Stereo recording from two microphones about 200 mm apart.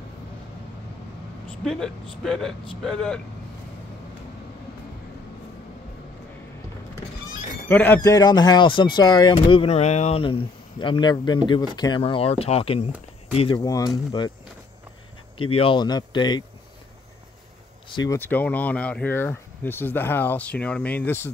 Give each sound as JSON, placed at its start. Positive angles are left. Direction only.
{"t": 1.6, "sound": "speech", "side_deg": 0}
{"t": 7.6, "sound": "speech", "side_deg": 10}
{"t": 15.5, "sound": "speech", "side_deg": 25}
{"t": 17.8, "sound": "speech", "side_deg": 20}